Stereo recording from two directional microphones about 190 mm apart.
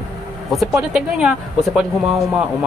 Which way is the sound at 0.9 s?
Centre (ahead or behind).